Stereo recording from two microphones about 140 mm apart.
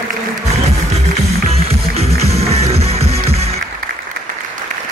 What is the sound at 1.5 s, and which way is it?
Music, 45° right (ahead or behind).